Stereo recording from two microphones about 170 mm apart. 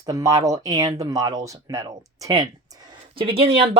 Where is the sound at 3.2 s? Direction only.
35° right (ahead or behind).